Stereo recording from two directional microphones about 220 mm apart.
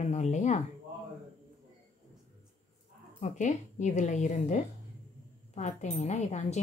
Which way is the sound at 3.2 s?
30° left (ahead or behind).